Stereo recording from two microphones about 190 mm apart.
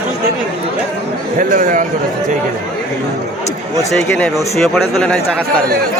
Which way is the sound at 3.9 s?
5° left (ahead or behind).